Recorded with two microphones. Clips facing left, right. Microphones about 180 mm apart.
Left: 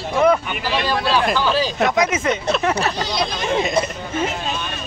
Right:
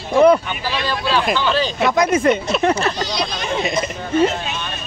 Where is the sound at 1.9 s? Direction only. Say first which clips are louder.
Right 3 dB; 55° right (ahead or behind).